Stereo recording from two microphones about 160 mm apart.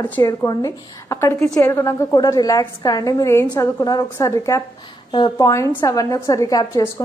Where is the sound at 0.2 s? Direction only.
20° left (ahead or behind).